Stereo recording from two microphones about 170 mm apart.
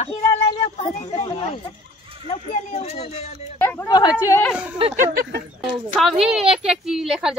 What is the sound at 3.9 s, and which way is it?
Speech, 25° left (ahead or behind).